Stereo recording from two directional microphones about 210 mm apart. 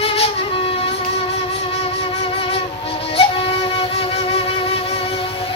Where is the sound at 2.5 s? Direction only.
25° left (ahead or behind).